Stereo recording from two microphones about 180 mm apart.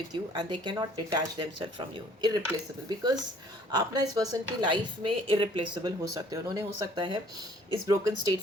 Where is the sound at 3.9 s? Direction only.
20° right (ahead or behind).